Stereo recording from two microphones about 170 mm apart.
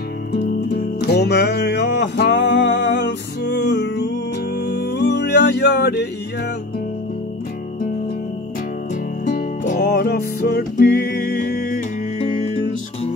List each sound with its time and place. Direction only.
0.7 s music: 75° left (ahead or behind)
9.2 s music: 50° left (ahead or behind)
9.8 s music: 70° left (ahead or behind)